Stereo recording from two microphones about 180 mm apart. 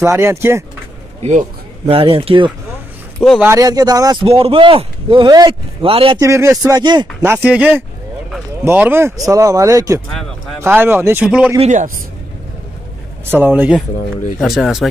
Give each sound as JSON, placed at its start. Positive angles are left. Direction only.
{"t": 0.0, "sound": "speech", "side_deg": -15}
{"t": 1.9, "sound": "speech", "side_deg": -30}
{"t": 3.3, "sound": "speech", "side_deg": -15}
{"t": 6.1, "sound": "speech", "side_deg": -15}
{"t": 11.6, "sound": "a man's voice", "side_deg": -40}
{"t": 13.3, "sound": "speech", "side_deg": -10}